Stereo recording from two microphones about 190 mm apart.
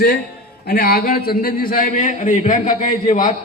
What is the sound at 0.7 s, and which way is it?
A man's voice, 50° left (ahead or behind).